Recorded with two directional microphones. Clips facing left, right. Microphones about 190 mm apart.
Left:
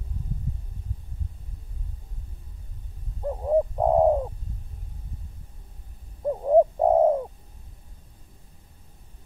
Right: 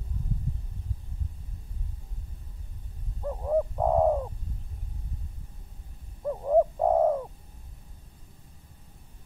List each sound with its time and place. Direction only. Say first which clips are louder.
3.2 s bird: left 4 dB; 20° left (ahead or behind)
6.2 s bird: left 4 dB; 25° left (ahead or behind)